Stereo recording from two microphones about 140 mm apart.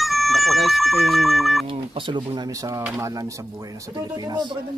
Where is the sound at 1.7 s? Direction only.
35° right (ahead or behind).